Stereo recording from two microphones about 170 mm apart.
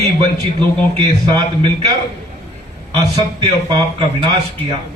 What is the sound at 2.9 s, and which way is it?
Speech, 25° right (ahead or behind).